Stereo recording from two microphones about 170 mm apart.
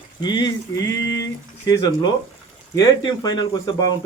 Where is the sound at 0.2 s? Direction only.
25° left (ahead or behind).